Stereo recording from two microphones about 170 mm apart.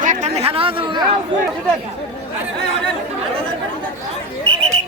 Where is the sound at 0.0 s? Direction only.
45° right (ahead or behind).